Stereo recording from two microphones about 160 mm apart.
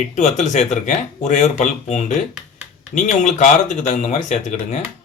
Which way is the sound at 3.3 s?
50° left (ahead or behind).